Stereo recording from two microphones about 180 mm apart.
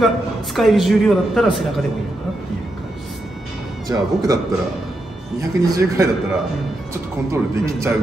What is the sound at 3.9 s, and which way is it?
Speech, 15° right (ahead or behind).